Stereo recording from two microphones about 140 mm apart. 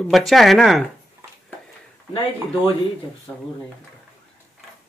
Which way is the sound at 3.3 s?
15° left (ahead or behind).